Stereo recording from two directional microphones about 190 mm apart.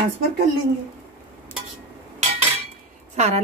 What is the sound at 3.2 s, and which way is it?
Speech, 35° right (ahead or behind).